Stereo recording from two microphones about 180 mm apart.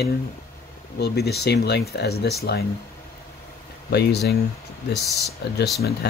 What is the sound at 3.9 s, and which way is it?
Speech, 65° left (ahead or behind).